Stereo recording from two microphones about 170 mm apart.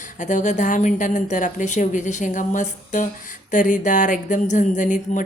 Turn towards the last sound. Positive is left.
turn(degrees=50)  # may be behind; listen again after turning